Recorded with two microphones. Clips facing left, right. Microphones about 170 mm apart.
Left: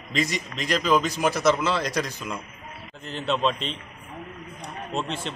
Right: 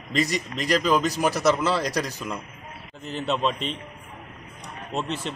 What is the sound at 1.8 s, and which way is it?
Speech, 40° right (ahead or behind).